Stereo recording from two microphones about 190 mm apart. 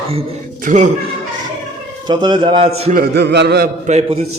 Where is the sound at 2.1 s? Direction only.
25° right (ahead or behind).